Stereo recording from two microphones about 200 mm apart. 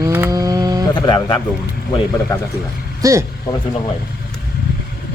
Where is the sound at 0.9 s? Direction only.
20° left (ahead or behind).